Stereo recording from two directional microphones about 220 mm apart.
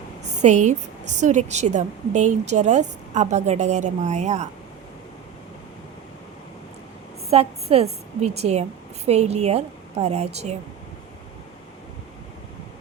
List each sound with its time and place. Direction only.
0.3 s a woman's voice: 30° right (ahead or behind)
7.3 s a woman's voice: 30° right (ahead or behind)